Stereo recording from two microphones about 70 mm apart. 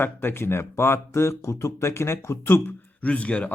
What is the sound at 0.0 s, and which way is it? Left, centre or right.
Speech, left.